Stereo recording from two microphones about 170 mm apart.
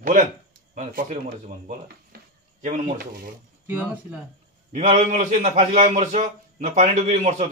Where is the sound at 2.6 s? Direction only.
55° right (ahead or behind).